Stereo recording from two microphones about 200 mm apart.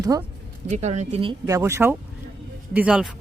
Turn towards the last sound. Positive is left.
turn(degrees=-5)  # may be behind; listen again after turning